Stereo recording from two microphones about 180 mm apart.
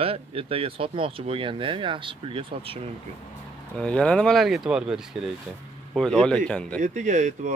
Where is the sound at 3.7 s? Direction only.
5° left (ahead or behind).